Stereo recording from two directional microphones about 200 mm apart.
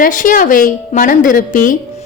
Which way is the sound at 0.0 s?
40° left (ahead or behind).